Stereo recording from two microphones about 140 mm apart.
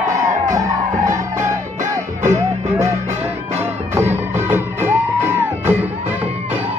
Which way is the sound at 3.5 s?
20° right (ahead or behind).